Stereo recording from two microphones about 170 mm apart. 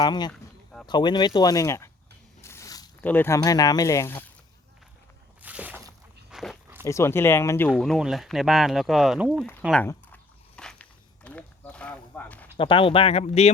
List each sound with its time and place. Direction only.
0.0 s speech: 25° left (ahead or behind)
0.3 s a sound: 5° left (ahead or behind)
0.9 s speech: 25° left (ahead or behind)
2.4 s biting: 15° left (ahead or behind)
3.0 s speech: 10° left (ahead or behind)
5.4 s a sound: 10° right (ahead or behind)
6.3 s walk: centre (ahead or behind)
6.8 s speech: 15° left (ahead or behind)
7.8 s speech: centre (ahead or behind)
9.8 s walk: 10° left (ahead or behind)
12.5 s speech: 30° left (ahead or behind)